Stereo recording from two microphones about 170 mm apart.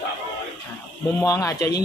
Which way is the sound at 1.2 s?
20° left (ahead or behind).